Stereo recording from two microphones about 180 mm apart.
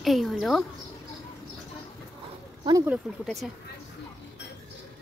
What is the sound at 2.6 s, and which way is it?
Speech, 20° right (ahead or behind).